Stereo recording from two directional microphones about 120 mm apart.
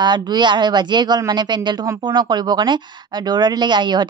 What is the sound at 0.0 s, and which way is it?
A woman's voice, 40° right (ahead or behind).